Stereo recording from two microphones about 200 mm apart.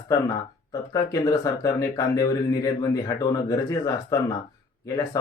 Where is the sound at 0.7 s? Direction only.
20° left (ahead or behind).